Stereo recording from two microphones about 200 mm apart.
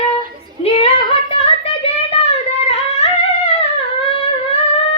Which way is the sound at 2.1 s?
30° left (ahead or behind).